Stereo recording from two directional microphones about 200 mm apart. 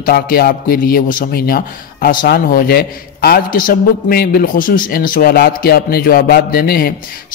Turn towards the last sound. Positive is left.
turn(degrees=50)  # may be behind; listen again after turning